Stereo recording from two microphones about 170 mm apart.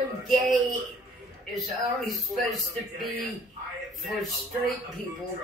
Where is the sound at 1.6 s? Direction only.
Centre (ahead or behind).